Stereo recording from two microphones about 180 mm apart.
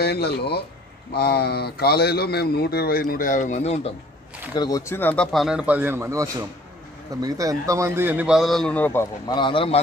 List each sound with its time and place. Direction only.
0.0 s a man's voice: 65° left (ahead or behind); by 3.9 s 35° left (ahead or behind)
4.6 s a man's voice: 20° left (ahead or behind)
9.3 s a man's voice: 25° left (ahead or behind)